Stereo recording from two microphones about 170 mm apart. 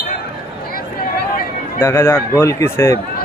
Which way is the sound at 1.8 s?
15° left (ahead or behind).